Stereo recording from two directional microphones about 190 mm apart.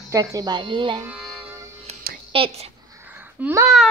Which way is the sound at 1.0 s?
5° right (ahead or behind).